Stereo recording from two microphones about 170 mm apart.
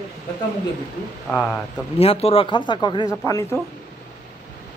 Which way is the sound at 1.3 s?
5° left (ahead or behind).